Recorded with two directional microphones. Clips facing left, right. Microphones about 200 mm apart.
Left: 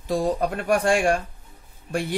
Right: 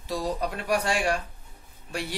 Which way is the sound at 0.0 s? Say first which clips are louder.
Left 6 dB; 50° left (ahead or behind).